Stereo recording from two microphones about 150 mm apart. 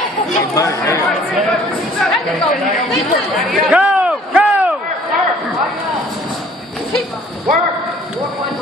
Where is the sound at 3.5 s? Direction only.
5° right (ahead or behind).